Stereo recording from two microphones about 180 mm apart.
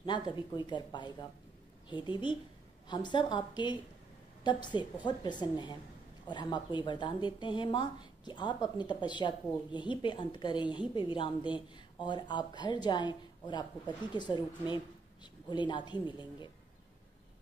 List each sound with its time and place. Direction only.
0.0 s a woman's voice: 25° left (ahead or behind)